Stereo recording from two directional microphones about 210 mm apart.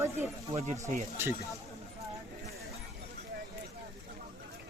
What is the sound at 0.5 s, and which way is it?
Speech, 35° right (ahead or behind).